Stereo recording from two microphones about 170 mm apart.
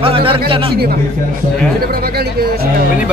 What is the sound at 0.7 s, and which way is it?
Speech, 65° right (ahead or behind).